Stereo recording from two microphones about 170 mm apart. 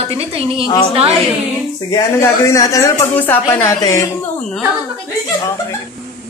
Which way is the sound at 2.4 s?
20° left (ahead or behind).